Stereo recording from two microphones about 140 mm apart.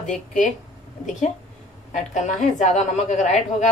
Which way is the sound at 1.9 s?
60° left (ahead or behind).